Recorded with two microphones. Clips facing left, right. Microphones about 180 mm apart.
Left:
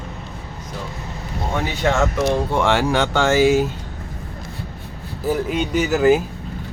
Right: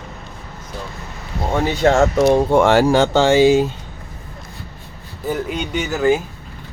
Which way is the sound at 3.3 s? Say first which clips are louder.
Right 2 dB; 25° right (ahead or behind).